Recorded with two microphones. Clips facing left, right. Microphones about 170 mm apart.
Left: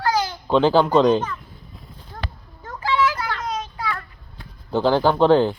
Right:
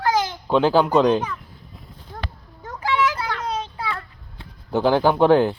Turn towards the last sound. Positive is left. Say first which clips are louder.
# even
turn(degrees=-15)  # may be behind; listen again after turning